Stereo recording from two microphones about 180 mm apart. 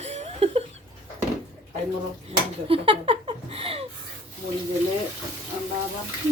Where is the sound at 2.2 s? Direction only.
30° right (ahead or behind).